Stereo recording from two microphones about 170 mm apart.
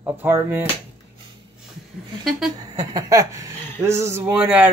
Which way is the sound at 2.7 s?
25° right (ahead or behind).